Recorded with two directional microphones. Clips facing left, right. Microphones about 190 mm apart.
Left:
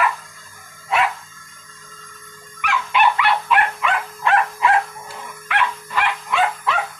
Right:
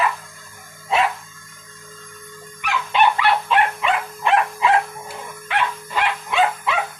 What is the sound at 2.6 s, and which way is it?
Dog, 35° right (ahead or behind).